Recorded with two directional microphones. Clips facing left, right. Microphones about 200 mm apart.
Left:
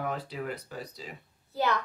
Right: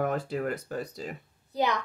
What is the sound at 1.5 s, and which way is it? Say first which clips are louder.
Speech: right 1 dB; 15° right (ahead or behind).